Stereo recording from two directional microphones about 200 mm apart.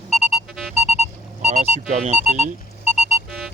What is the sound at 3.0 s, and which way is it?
Sonar, centre (ahead or behind).